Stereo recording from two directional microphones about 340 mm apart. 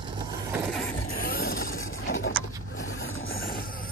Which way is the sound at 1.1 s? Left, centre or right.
Left.